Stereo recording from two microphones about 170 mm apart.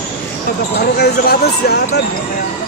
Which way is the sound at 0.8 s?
70° left (ahead or behind).